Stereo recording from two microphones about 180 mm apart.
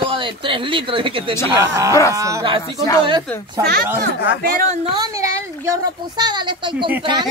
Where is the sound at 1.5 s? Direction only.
15° right (ahead or behind).